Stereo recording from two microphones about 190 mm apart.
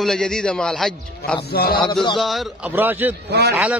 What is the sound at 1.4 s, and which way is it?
Mantra, 55° left (ahead or behind).